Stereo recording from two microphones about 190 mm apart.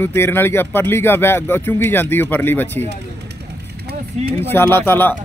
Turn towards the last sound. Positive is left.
turn(degrees=10)  # may be behind; listen again after turning